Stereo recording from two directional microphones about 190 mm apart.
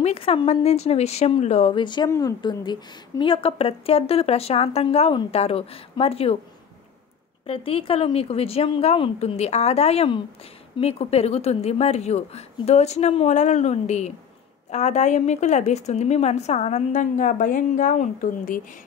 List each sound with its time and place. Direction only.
0.0 s a woman's voice: 30° left (ahead or behind)
7.4 s a woman's voice: 30° left (ahead or behind)